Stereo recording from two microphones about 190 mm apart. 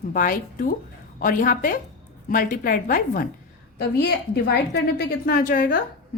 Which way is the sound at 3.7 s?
60° left (ahead or behind).